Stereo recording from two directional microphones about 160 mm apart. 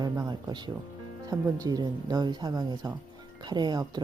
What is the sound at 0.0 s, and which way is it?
Speech, 25° right (ahead or behind).